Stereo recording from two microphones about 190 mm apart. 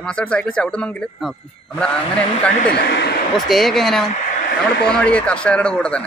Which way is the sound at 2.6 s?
60° left (ahead or behind).